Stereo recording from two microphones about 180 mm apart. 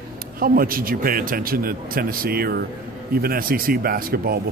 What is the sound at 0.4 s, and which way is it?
A man's voice, 55° right (ahead or behind).